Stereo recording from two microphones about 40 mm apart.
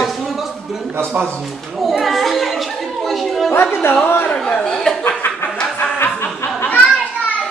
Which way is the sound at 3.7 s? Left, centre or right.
Left.